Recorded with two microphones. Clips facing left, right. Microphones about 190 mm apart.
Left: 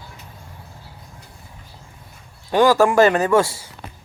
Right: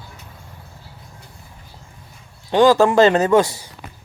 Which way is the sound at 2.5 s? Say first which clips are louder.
Right 1 dB; 20° right (ahead or behind).